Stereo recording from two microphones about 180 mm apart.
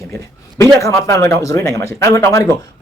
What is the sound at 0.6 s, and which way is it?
Speech, 15° left (ahead or behind).